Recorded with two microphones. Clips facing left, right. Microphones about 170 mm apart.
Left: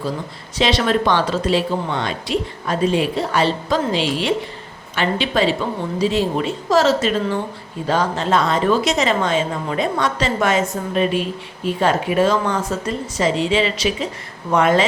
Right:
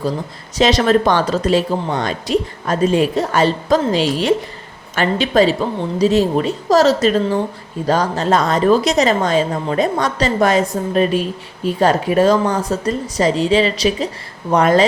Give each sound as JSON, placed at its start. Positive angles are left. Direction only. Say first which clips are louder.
{"t": 0.6, "sound": "a woman's voice", "louder": "right 4 dB", "side_deg": -45}